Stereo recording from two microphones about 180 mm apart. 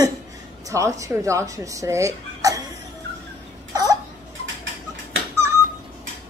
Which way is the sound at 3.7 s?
20° right (ahead or behind).